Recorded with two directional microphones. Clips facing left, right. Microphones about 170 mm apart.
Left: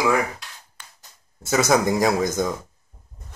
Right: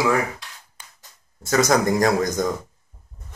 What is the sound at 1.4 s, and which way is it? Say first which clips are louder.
Speech: right 1 dB; 5° left (ahead or behind).